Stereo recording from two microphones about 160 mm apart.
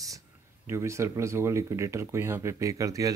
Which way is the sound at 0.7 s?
15° right (ahead or behind).